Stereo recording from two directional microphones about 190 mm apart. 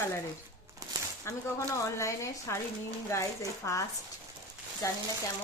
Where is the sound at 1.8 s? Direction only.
15° left (ahead or behind).